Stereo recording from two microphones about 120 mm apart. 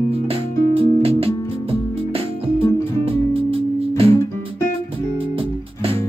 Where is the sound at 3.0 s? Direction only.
50° right (ahead or behind).